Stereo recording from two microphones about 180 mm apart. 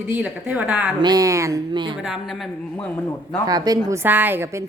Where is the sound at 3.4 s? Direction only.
20° right (ahead or behind).